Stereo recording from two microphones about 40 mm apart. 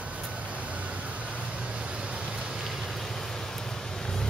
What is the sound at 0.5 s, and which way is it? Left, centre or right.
Vehicle, right.